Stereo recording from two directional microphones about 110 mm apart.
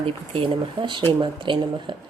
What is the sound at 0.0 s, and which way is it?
A woman's voice, 55° right (ahead or behind).